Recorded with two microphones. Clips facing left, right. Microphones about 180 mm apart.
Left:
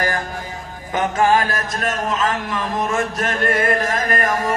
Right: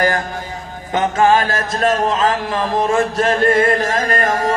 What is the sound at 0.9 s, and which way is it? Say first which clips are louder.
Music: right 3 dB; 25° right (ahead or behind).